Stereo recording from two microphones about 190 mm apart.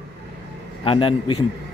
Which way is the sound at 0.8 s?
30° left (ahead or behind).